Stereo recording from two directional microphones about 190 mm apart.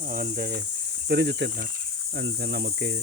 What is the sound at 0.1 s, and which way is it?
Cricket, 50° right (ahead or behind).